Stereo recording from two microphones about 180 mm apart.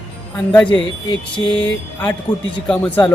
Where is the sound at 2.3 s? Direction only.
25° left (ahead or behind).